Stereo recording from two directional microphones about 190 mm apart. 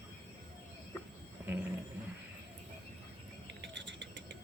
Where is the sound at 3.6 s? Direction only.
70° right (ahead or behind).